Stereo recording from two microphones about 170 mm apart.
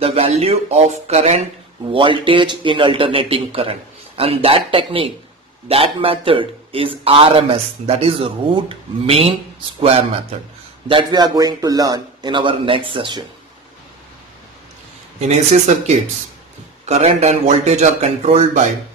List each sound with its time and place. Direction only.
0.0 s a man's voice: 35° right (ahead or behind)
1.9 s a man's voice: 30° right (ahead or behind)
15.1 s a man's voice: 40° right (ahead or behind)
16.8 s a man's voice: 40° right (ahead or behind)